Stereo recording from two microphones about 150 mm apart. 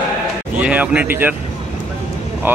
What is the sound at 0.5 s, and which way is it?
Speech, 10° right (ahead or behind).